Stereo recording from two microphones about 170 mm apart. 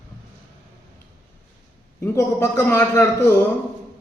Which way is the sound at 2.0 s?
15° left (ahead or behind).